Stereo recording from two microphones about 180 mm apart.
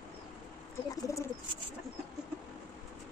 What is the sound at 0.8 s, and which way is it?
Bird, 15° left (ahead or behind).